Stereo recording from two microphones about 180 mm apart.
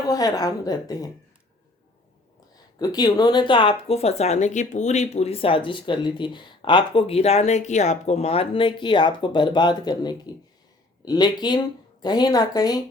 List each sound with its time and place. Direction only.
0.1 s speech: 20° left (ahead or behind)
2.7 s speech: 20° left (ahead or behind)